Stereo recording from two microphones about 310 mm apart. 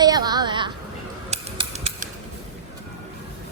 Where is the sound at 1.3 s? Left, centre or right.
Centre.